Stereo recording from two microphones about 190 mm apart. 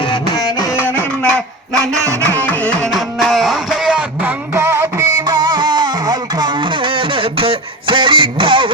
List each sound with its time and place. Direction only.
0.0 s music: 25° left (ahead or behind); by 2.0 s 5° left (ahead or behind)
2.3 s carnatic music: 10° left (ahead or behind)
2.8 s a sound: centre (ahead or behind); by 8.7 s 25° right (ahead or behind)